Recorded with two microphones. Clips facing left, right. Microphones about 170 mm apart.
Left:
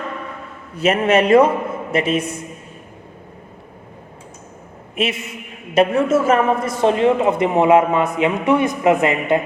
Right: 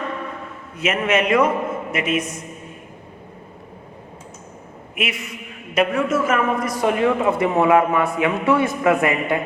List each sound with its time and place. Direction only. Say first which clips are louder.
0.8 s a man's voice: left 5 dB; 35° left (ahead or behind)
4.9 s a man's voice: left 5 dB; 25° left (ahead or behind)